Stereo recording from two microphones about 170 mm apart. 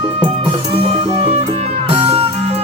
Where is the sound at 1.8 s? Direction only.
35° right (ahead or behind).